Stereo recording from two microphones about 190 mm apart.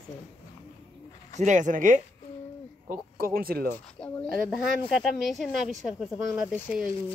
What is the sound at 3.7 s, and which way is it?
Speech, 10° left (ahead or behind).